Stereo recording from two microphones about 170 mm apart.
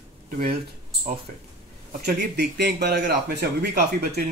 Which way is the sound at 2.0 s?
80° right.